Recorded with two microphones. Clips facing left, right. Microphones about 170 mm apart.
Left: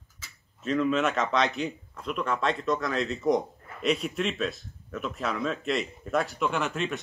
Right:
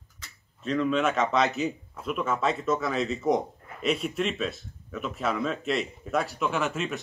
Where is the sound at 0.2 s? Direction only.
Centre (ahead or behind).